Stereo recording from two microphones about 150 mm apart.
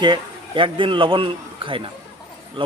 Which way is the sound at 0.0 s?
35° right (ahead or behind).